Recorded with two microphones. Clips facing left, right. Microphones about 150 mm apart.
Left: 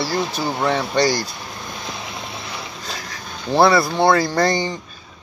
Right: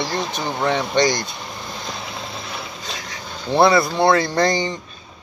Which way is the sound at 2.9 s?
Centre (ahead or behind).